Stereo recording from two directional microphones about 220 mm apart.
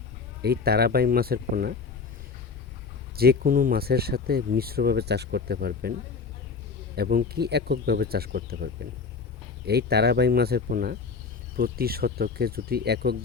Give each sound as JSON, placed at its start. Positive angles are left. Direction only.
{"t": 0.4, "sound": "speech", "side_deg": -45}
{"t": 3.2, "sound": "speech", "side_deg": -40}
{"t": 6.9, "sound": "speech", "side_deg": -45}